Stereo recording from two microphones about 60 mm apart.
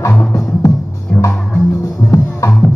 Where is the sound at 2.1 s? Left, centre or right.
Left.